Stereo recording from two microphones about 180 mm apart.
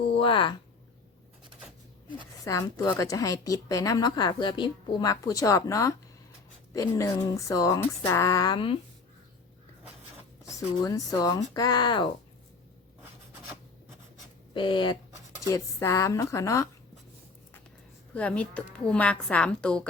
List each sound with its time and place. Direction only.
0.1 s speech: 30° left (ahead or behind)
2.4 s a woman's voice: 20° left (ahead or behind)
10.8 s a woman's voice: 20° left (ahead or behind)
14.5 s a woman's voice: 25° left (ahead or behind)
18.1 s speech: 5° left (ahead or behind)